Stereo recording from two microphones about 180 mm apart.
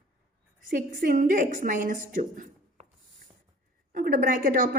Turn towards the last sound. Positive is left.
turn(degrees=-50)  # may be behind; listen again after turning